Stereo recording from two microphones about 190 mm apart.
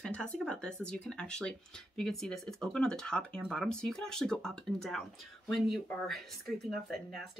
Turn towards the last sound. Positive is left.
turn(degrees=0)  # may be behind; listen again after turning